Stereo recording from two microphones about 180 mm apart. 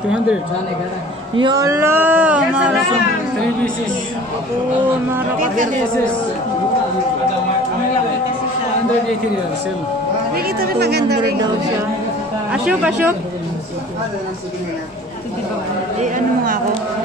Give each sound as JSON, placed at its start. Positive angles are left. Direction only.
{"t": 1.4, "sound": "speech", "side_deg": -20}
{"t": 10.3, "sound": "speech", "side_deg": -60}
{"t": 12.5, "sound": "speech", "side_deg": -5}